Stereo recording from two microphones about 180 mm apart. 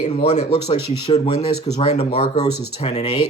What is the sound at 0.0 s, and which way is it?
Speech, 35° left (ahead or behind).